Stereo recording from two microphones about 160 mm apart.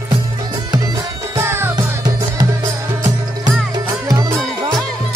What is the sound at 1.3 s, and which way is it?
Music, 15° right (ahead or behind).